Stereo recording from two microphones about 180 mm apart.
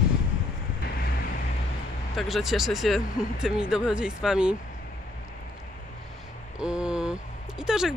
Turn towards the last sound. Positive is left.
turn(degrees=0)  # may be behind; listen again after turning